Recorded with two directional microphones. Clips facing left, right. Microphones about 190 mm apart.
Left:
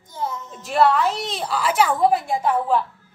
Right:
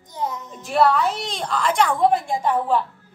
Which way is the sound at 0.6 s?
Centre (ahead or behind).